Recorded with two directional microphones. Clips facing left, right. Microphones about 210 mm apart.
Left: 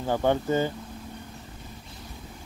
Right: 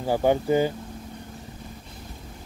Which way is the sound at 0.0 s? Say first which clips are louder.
Right 3 dB; 10° right (ahead or behind).